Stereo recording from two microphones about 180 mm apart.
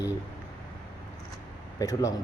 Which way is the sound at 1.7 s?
20° left (ahead or behind).